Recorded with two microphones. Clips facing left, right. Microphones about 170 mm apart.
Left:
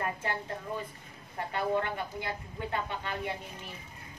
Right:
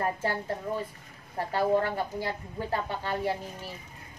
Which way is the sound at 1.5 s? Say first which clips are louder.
Right 5 dB; 35° right (ahead or behind).